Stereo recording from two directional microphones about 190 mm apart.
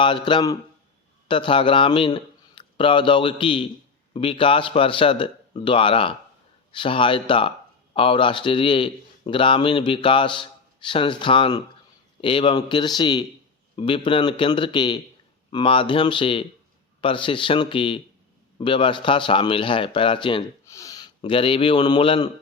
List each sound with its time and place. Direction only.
0.0 s a man's voice: 25° left (ahead or behind)